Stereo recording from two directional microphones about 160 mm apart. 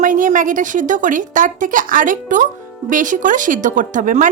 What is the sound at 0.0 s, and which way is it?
Speech, 55° right (ahead or behind).